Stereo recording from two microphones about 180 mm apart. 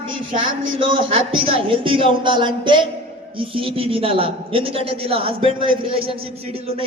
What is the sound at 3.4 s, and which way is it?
A woman's voice, 30° right (ahead or behind).